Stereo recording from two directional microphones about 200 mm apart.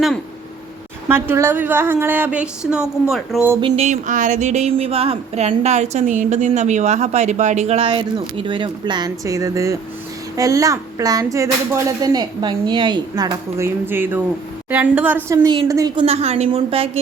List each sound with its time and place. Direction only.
1.0 s speech: 10° right (ahead or behind)
3.8 s speech: 35° right (ahead or behind); by 16.0 s 15° right (ahead or behind)
16.0 s a woman's voice: 30° right (ahead or behind)